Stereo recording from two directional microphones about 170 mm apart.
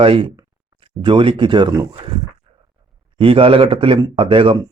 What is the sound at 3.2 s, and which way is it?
Speech, 30° right (ahead or behind).